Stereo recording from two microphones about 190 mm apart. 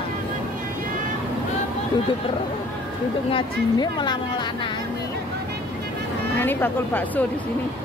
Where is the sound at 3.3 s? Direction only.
25° left (ahead or behind).